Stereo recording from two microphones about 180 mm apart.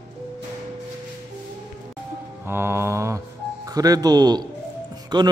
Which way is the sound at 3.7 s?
20° right (ahead or behind).